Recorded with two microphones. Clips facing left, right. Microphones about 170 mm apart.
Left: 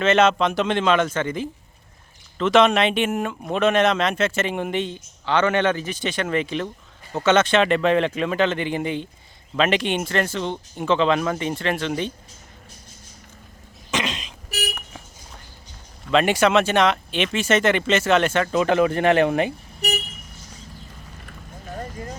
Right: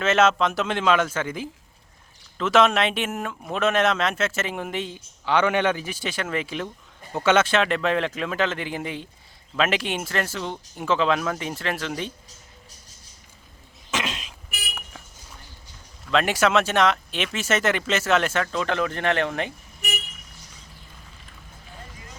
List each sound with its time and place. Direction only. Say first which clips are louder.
0.0 s speech: left 2 dB; 5° right (ahead or behind)
13.9 s throat clearing: left 3 dB; 5° right (ahead or behind)
16.0 s speech: left 3 dB; centre (ahead or behind)
18.6 s speech: left 9 dB; 10° left (ahead or behind)
21.8 s a sound: left 13 dB; 45° left (ahead or behind)